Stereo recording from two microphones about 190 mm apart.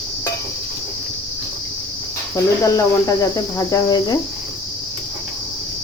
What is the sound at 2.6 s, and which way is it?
Speech, 15° left (ahead or behind).